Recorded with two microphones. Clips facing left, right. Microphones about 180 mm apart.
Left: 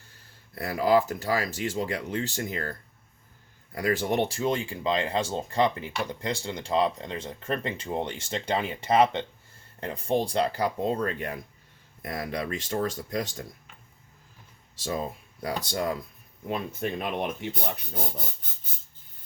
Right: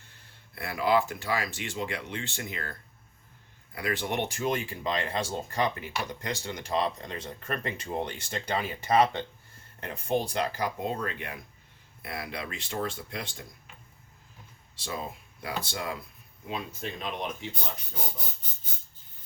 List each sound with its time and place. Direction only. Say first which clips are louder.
0.5 s speech: left 3 dB; 40° left (ahead or behind)
3.8 s speech: left 5 dB; 40° left (ahead or behind)
14.8 s speech: left 5 dB; 40° left (ahead or behind)
16.5 s speech: left 6 dB; 50° left (ahead or behind)